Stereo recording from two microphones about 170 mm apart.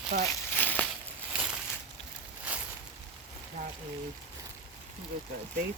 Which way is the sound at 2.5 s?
10° right (ahead or behind).